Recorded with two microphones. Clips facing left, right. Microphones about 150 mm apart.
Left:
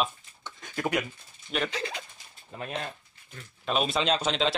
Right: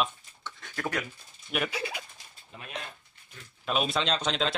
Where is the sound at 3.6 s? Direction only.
Centre (ahead or behind).